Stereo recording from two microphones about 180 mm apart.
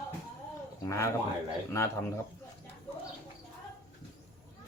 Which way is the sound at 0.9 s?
15° left (ahead or behind).